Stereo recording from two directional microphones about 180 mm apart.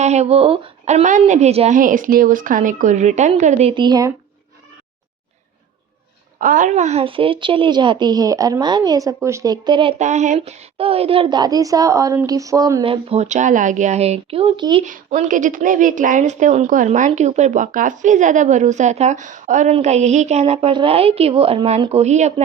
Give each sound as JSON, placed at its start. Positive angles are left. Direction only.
{"t": 0.0, "sound": "speech", "side_deg": -40}
{"t": 6.4, "sound": "speech", "side_deg": -45}
{"t": 10.0, "sound": "speech", "side_deg": -40}
{"t": 14.8, "sound": "a woman's voice", "side_deg": -45}